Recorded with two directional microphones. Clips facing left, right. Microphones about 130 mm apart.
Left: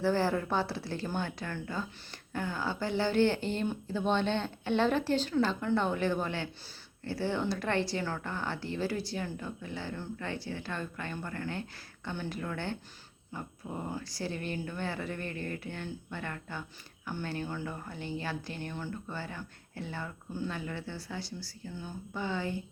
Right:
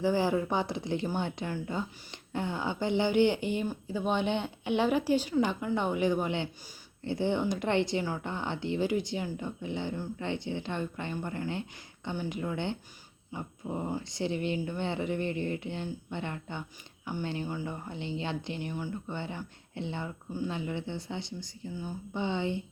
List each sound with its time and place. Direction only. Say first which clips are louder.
0.0 s speech: right 2 dB; 15° right (ahead or behind)